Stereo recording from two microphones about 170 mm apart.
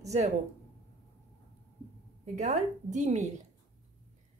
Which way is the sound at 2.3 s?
45° right (ahead or behind).